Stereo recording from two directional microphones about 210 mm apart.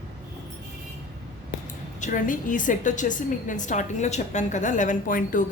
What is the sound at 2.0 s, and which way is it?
A woman's voice, 40° left (ahead or behind).